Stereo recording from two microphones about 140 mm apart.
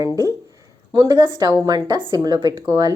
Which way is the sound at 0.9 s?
30° right (ahead or behind).